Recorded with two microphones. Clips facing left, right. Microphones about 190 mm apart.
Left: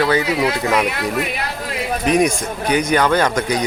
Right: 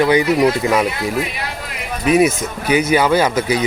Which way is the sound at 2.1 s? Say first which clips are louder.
Right 3 dB; 5° right (ahead or behind).